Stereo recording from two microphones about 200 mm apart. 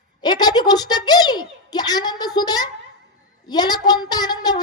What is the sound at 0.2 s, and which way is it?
Speech, 20° left (ahead or behind).